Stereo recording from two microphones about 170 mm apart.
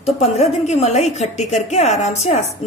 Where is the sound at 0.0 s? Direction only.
40° left (ahead or behind).